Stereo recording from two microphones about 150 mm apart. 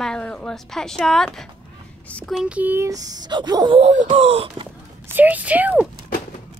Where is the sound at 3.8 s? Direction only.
50° right (ahead or behind).